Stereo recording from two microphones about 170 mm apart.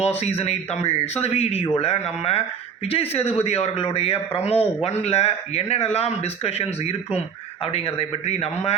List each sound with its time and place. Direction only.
0.2 s speech: 35° left (ahead or behind)